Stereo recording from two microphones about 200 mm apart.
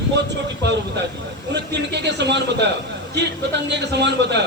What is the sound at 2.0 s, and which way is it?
Speech, 60° right (ahead or behind).